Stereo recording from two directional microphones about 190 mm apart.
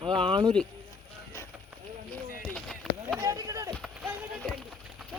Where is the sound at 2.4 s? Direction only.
Centre (ahead or behind).